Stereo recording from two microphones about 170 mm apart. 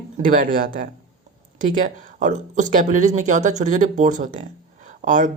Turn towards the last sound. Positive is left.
turn(degrees=-50)  # may be behind; listen again after turning